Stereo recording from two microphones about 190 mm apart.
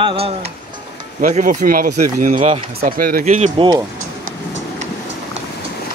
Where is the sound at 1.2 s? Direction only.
45° right (ahead or behind).